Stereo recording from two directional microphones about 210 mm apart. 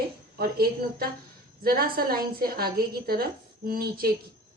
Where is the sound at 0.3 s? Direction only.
45° right (ahead or behind).